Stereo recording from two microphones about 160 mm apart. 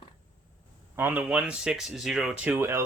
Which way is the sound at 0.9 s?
10° right (ahead or behind).